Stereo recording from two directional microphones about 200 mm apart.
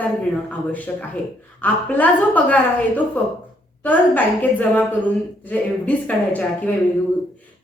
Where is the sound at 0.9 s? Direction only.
5° left (ahead or behind).